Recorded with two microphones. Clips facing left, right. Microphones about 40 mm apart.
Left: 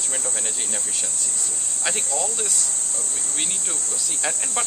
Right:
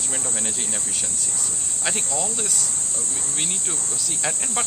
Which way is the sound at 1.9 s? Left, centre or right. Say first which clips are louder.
Even; centre.